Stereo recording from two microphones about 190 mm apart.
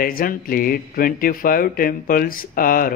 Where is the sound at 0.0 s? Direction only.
50° left (ahead or behind).